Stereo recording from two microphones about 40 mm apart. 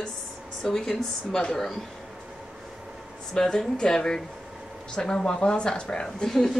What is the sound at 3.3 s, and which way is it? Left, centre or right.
Speech, centre.